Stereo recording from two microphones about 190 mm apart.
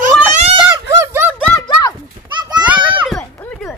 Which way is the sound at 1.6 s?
20° left (ahead or behind).